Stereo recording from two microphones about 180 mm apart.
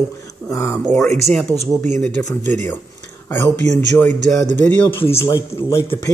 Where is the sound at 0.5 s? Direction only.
15° left (ahead or behind).